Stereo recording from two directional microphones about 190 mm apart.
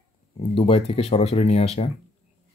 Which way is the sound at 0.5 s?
30° left (ahead or behind).